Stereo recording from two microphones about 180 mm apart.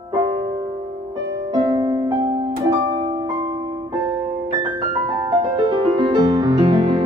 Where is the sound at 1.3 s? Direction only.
25° right (ahead or behind).